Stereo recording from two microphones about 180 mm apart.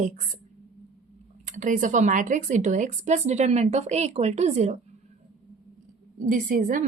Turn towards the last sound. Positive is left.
turn(degrees=-50)  # may be behind; listen again after turning